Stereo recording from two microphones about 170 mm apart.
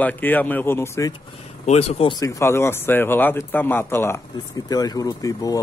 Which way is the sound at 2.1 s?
20° left (ahead or behind).